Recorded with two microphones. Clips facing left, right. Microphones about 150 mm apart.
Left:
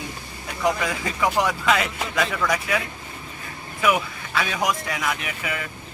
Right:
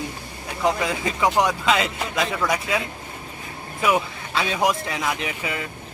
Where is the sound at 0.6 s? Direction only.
20° right (ahead or behind).